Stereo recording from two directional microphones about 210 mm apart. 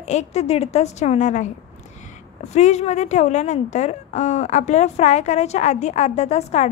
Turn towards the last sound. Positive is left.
turn(degrees=30)  # may be behind; listen again after turning